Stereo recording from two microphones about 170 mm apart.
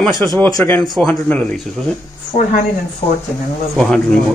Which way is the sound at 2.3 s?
40° left (ahead or behind).